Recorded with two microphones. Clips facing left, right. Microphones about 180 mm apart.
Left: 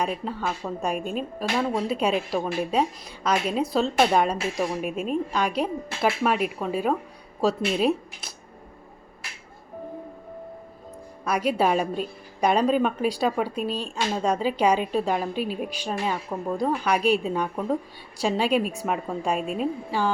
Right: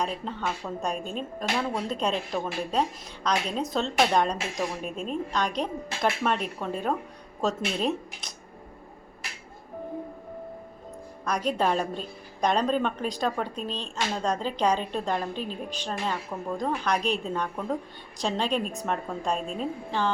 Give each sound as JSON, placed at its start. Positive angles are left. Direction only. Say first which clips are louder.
{"t": 0.0, "sound": "a woman's voice", "louder": "left 3 dB", "side_deg": 5}
{"t": 11.3, "sound": "a woman's voice", "louder": "left 3 dB", "side_deg": 10}